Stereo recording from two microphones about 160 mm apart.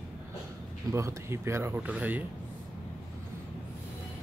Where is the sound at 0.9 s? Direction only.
15° right (ahead or behind).